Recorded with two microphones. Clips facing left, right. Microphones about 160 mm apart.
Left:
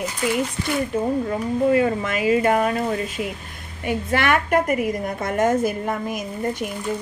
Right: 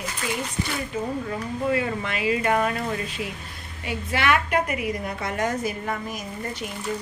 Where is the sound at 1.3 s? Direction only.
35° left (ahead or behind); by 6.7 s 50° left (ahead or behind).